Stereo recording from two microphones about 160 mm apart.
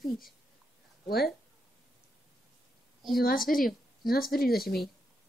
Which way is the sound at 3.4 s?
65° left (ahead or behind).